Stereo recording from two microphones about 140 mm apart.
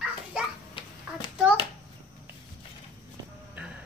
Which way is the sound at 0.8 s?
40° left (ahead or behind).